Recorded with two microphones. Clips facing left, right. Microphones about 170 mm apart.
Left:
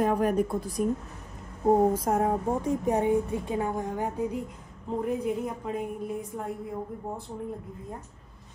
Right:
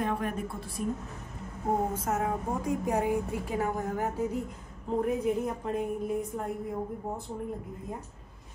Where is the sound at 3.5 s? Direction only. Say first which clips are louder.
Left 1 dB; 25° left (ahead or behind).